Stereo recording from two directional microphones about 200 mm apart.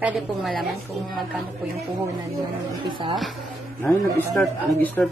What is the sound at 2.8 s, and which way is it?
Speech, 25° right (ahead or behind).